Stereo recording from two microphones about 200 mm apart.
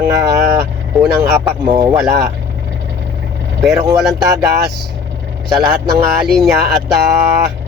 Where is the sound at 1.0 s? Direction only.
5° right (ahead or behind).